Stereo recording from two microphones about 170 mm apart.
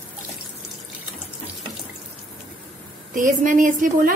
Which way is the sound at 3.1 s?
50° right (ahead or behind).